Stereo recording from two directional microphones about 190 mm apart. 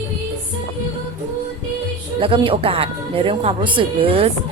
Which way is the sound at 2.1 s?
30° right (ahead or behind).